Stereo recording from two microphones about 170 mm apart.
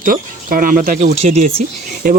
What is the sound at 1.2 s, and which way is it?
Speech, 40° right (ahead or behind).